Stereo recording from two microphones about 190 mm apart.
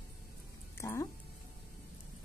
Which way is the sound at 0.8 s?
15° left (ahead or behind).